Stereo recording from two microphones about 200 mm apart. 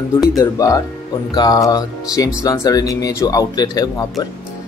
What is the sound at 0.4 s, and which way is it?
Speech, 20° left (ahead or behind).